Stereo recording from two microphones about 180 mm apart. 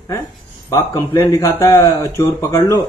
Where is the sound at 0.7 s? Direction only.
15° left (ahead or behind).